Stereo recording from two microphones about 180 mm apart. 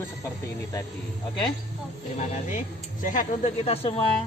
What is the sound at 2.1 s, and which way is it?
Speech, 45° left (ahead or behind).